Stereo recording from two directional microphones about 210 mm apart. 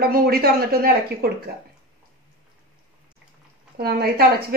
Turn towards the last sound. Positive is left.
turn(degrees=-50)  # may be behind; listen again after turning